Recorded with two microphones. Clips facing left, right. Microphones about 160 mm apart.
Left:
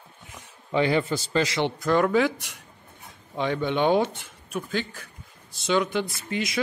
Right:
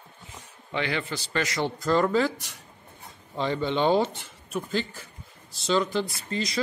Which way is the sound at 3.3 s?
10° left (ahead or behind).